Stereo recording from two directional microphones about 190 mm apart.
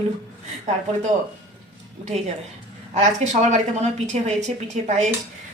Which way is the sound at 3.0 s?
35° right (ahead or behind).